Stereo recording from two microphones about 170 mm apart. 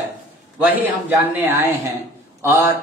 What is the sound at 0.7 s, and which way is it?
A man's voice, 10° right (ahead or behind).